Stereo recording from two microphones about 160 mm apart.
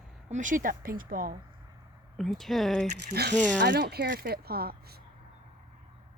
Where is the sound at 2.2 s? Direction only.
Centre (ahead or behind).